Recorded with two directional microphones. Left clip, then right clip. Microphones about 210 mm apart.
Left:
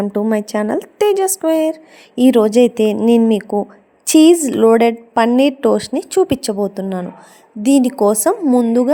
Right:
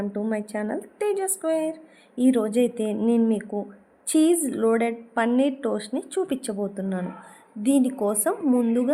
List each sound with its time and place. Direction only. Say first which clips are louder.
0.0 s a woman's voice: left 11 dB; 35° left (ahead or behind)
8.4 s speech: left 8 dB; 20° left (ahead or behind)